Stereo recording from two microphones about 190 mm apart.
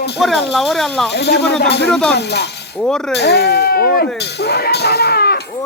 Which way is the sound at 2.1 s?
60° left (ahead or behind).